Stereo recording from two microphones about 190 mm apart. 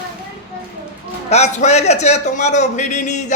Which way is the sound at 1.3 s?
35° left (ahead or behind).